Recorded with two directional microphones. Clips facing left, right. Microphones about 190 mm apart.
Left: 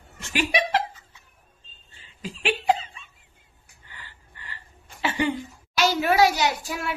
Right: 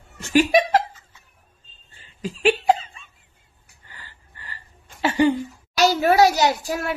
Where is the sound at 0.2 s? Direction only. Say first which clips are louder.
Right 8 dB; 45° right (ahead or behind).